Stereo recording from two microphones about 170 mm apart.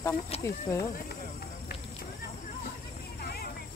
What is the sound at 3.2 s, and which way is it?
Vehicle, 65° left (ahead or behind).